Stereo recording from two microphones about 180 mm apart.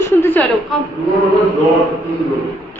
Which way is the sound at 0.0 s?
10° left (ahead or behind).